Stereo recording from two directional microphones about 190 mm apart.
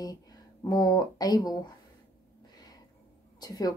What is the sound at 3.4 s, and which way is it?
Speech, 20° left (ahead or behind).